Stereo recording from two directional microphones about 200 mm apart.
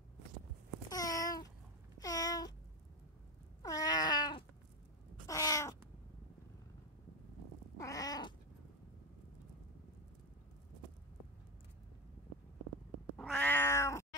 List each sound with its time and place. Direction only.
0.8 s babbling: 15° left (ahead or behind)
2.0 s a sound: 15° left (ahead or behind)
3.6 s cat: 20° left (ahead or behind)
7.7 s cat: 15° left (ahead or behind)
13.2 s cat: 10° left (ahead or behind)